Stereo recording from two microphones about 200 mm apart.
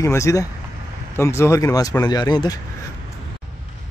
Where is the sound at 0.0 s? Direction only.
15° left (ahead or behind).